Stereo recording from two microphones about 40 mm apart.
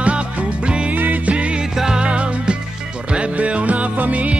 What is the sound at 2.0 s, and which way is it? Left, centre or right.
Music, right.